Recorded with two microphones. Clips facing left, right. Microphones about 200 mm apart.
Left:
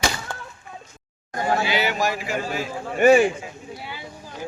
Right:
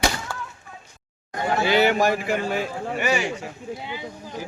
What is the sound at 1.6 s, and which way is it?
Speech, 55° right (ahead or behind).